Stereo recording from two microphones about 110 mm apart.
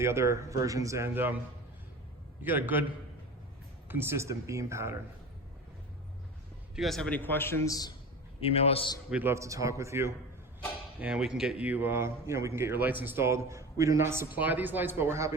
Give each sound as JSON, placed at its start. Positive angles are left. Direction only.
{"t": 0.0, "sound": "a man's voice", "side_deg": -25}
{"t": 2.4, "sound": "a man's voice", "side_deg": -15}
{"t": 3.8, "sound": "a man's voice", "side_deg": -20}
{"t": 6.7, "sound": "a man's voice", "side_deg": 0}
{"t": 7.1, "sound": "a man's voice", "side_deg": 15}
{"t": 7.7, "sound": "speech", "side_deg": 35}
{"t": 8.4, "sound": "a man's voice", "side_deg": 60}
{"t": 9.0, "sound": "a man's voice", "side_deg": -15}
{"t": 9.3, "sound": "a man's voice", "side_deg": -30}
{"t": 11.0, "sound": "a man's voice", "side_deg": -5}